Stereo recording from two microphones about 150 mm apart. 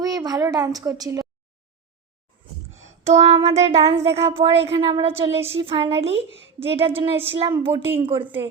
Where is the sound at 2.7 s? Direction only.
50° right (ahead or behind).